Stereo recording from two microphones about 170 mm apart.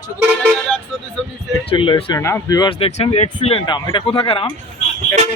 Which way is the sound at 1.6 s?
30° left (ahead or behind).